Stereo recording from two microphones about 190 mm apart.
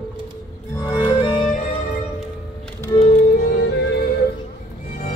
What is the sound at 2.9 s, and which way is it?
Music, 40° left (ahead or behind).